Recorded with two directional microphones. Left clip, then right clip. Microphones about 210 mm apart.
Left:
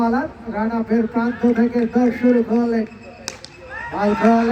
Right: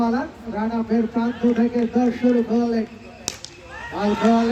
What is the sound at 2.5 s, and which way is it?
Speech, 50° left (ahead or behind).